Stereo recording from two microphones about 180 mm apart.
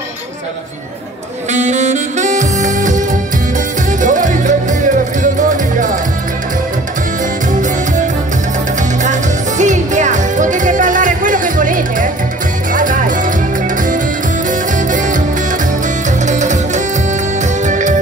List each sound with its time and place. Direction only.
1.5 s saxophone: 40° right (ahead or behind)
4.0 s music: 45° right (ahead or behind)
9.0 s music: 45° right (ahead or behind)
14.5 s music: 45° right (ahead or behind)
16.3 s music: 40° right (ahead or behind)